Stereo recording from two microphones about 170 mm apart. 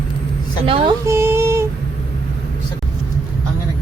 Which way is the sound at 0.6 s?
30° right (ahead or behind).